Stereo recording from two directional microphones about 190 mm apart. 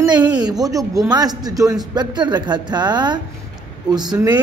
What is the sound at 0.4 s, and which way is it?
A man's voice, 20° right (ahead or behind).